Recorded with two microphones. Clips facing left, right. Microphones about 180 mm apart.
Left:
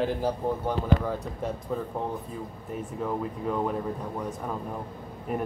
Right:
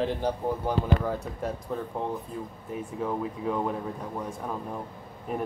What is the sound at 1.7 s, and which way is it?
Speech, centre (ahead or behind).